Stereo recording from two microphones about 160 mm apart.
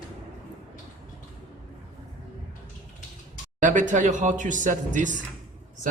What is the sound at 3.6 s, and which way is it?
A man's voice, 50° right (ahead or behind).